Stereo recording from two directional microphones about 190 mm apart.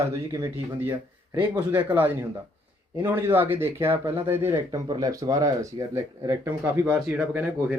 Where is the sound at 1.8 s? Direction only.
10° right (ahead or behind).